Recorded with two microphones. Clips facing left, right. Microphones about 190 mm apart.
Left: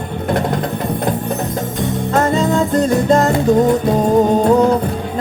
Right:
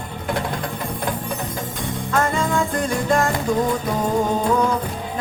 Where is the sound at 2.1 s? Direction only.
20° left (ahead or behind).